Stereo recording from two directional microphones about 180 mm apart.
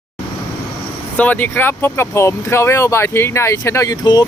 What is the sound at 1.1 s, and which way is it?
Speech, 10° left (ahead or behind).